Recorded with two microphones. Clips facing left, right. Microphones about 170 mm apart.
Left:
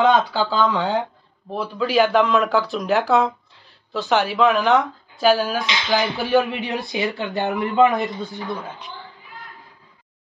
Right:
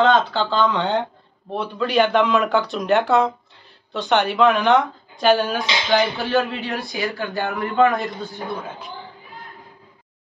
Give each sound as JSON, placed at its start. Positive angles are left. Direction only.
{"t": 0.0, "sound": "speech", "side_deg": 10}
{"t": 8.0, "sound": "speech", "side_deg": 0}